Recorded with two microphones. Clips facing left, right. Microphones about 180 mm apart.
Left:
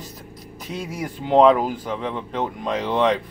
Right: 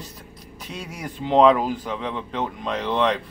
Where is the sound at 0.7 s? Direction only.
10° left (ahead or behind).